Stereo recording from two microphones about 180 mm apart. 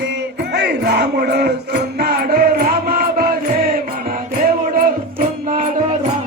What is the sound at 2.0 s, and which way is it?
Chant, 55° right (ahead or behind).